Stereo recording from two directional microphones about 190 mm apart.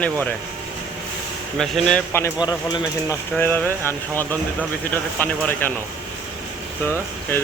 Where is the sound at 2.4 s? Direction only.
20° left (ahead or behind).